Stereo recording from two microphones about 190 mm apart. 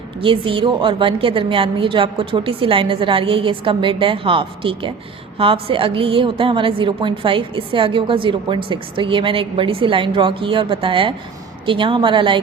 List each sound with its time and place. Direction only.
0.2 s a woman's voice: 25° right (ahead or behind)